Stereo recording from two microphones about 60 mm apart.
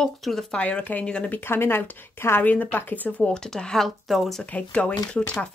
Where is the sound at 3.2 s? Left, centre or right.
Centre.